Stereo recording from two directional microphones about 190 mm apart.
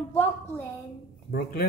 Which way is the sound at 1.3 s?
55° left (ahead or behind).